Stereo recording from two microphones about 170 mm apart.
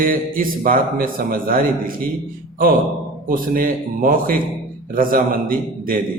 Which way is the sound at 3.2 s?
55° right (ahead or behind).